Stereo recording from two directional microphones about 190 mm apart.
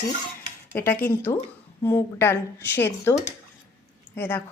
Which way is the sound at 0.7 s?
10° left (ahead or behind).